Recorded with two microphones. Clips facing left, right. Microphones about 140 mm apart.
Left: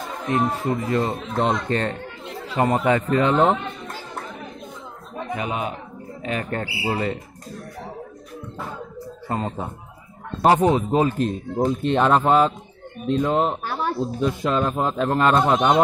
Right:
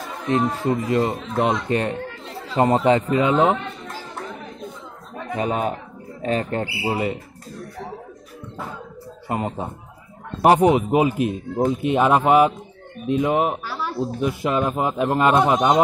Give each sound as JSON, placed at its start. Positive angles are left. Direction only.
{"t": 0.7, "sound": "speech", "side_deg": -20}
{"t": 2.3, "sound": "speech", "side_deg": -30}
{"t": 3.1, "sound": "speech", "side_deg": -10}
{"t": 5.3, "sound": "speech", "side_deg": -40}
{"t": 6.8, "sound": "speech", "side_deg": -15}
{"t": 9.3, "sound": "speech", "side_deg": -15}
{"t": 13.7, "sound": "a sound", "side_deg": 50}
{"t": 13.9, "sound": "speech", "side_deg": -5}